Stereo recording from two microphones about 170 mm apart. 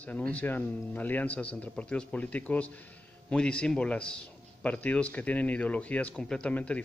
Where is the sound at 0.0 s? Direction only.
10° left (ahead or behind).